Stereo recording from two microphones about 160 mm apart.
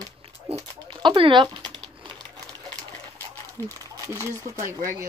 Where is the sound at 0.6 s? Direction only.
30° right (ahead or behind).